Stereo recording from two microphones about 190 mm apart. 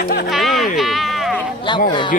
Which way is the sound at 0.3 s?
Centre (ahead or behind).